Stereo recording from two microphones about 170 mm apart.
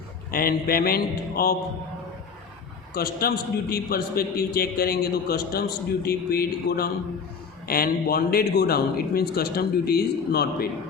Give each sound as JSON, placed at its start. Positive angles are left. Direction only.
{"t": 0.3, "sound": "a man's voice", "side_deg": 60}
{"t": 2.9, "sound": "a man's voice", "side_deg": 65}